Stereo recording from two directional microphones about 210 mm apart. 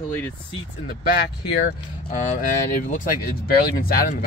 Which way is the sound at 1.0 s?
45° left (ahead or behind).